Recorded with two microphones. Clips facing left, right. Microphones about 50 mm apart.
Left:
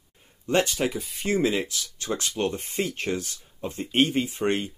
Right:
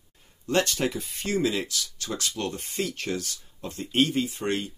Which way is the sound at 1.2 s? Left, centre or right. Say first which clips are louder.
Left 2 dB; left.